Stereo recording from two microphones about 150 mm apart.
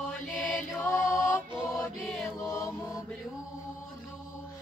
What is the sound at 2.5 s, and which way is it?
Mantra, 20° left (ahead or behind).